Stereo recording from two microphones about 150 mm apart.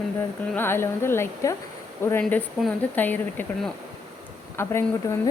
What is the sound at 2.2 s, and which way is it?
A woman's voice, 5° left (ahead or behind).